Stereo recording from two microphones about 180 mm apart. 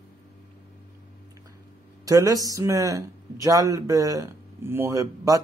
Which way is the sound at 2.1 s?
20° right (ahead or behind).